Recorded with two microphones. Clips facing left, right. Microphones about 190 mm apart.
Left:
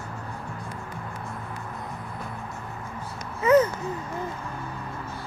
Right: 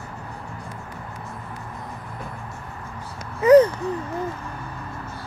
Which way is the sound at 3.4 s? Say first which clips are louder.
Right 6 dB; 35° right (ahead or behind).